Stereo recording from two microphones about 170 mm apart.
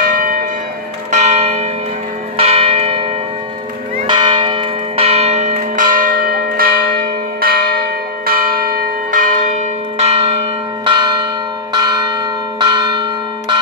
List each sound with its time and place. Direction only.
0.0 s church bell: 50° right (ahead or behind)
1.1 s church bell: 40° right (ahead or behind)
4.1 s church bell: 30° right (ahead or behind)